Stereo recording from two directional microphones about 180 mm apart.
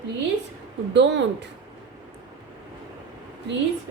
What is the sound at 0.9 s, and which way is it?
Speech, 80° right.